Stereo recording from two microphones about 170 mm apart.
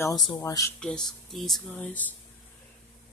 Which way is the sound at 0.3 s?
20° left (ahead or behind).